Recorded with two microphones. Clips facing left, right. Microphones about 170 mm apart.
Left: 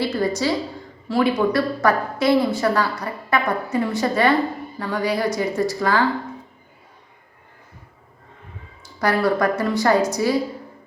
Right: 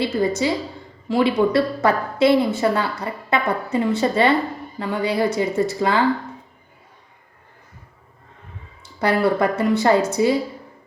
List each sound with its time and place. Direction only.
0.0 s a woman's voice: 20° right (ahead or behind)
9.0 s a woman's voice: 25° right (ahead or behind)